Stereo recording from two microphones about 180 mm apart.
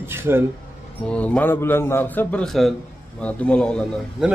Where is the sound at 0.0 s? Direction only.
15° right (ahead or behind).